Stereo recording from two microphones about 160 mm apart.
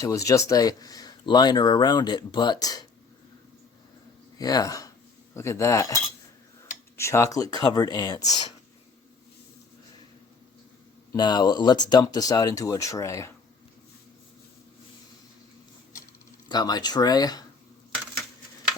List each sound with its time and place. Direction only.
0.0 s speech: 20° left (ahead or behind)
4.4 s speech: 25° left (ahead or behind)
11.1 s speech: 25° left (ahead or behind)
16.5 s speech: 25° left (ahead or behind)